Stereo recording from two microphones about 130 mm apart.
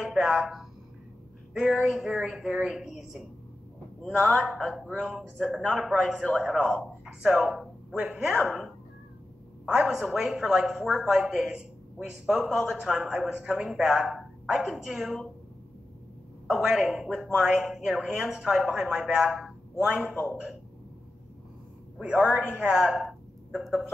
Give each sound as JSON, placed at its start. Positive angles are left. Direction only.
{"t": 0.0, "sound": "a woman's voice", "side_deg": -5}
{"t": 7.2, "sound": "a woman's voice", "side_deg": -5}
{"t": 16.4, "sound": "a woman's voice", "side_deg": -5}
{"t": 21.9, "sound": "a man's voice", "side_deg": -10}